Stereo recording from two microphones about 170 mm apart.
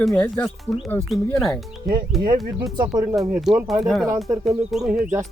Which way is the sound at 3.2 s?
Centre (ahead or behind).